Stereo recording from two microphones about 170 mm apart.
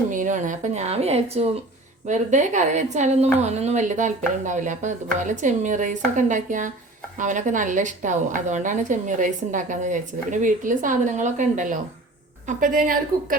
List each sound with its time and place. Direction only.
0.1 s a woman's voice: 50° right (ahead or behind)